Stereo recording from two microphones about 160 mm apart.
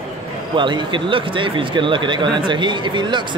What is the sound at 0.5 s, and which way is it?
Speech, 30° right (ahead or behind).